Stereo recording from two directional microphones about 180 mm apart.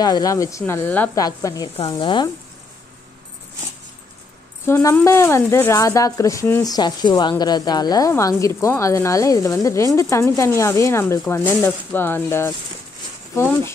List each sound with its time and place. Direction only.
0.0 s speech: 20° left (ahead or behind)
1.2 s speech: 20° left (ahead or behind)
4.6 s speech: 15° left (ahead or behind)